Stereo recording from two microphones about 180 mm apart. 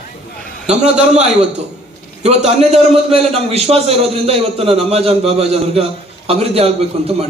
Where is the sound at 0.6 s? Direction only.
40° right (ahead or behind).